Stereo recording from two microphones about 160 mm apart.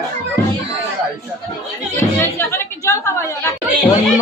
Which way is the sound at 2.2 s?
15° left (ahead or behind).